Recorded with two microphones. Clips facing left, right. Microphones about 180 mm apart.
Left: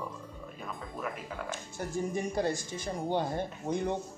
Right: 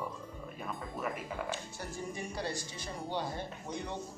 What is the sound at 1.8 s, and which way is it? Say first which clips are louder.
Speech: left 7 dB; 50° left (ahead or behind).